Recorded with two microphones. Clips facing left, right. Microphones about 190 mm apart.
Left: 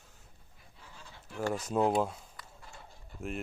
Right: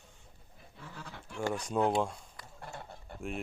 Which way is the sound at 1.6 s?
5° left (ahead or behind).